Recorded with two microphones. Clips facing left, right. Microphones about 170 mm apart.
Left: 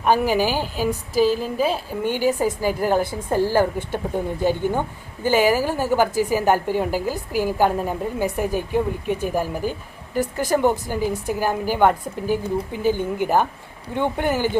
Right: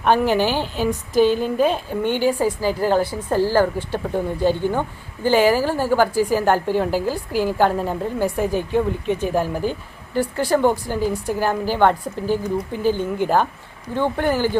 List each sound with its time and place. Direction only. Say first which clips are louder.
0.0 s a woman's voice: right 1 dB; 5° left (ahead or behind)